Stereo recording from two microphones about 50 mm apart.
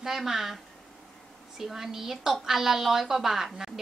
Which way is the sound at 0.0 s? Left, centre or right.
Centre.